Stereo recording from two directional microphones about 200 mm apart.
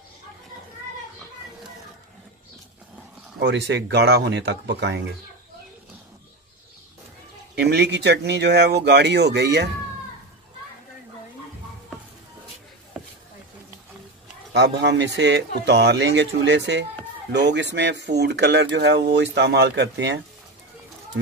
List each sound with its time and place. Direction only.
3.3 s speech: 60° right (ahead or behind)
7.5 s speech: 55° right (ahead or behind)
14.5 s speech: 60° right (ahead or behind)